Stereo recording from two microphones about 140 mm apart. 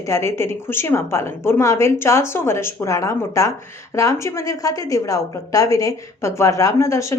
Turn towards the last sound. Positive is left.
turn(degrees=20)  # may be behind; listen again after turning